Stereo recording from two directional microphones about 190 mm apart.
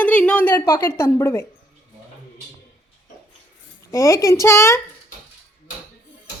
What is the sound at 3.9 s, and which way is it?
Speech, 15° left (ahead or behind).